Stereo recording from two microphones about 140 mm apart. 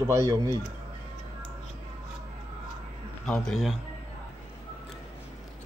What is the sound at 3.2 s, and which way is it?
Speech, 5° left (ahead or behind).